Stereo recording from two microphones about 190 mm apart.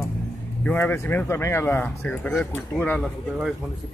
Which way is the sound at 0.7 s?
10° left (ahead or behind).